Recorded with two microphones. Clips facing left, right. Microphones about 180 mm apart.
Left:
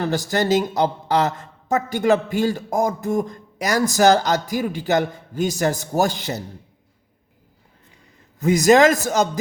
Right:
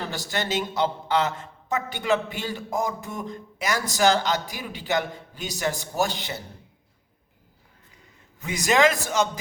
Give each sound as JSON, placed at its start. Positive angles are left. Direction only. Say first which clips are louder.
{"t": 0.0, "sound": "a man's voice", "louder": "left 9 dB", "side_deg": 45}
{"t": 8.4, "sound": "a man's voice", "louder": "left 8 dB", "side_deg": 40}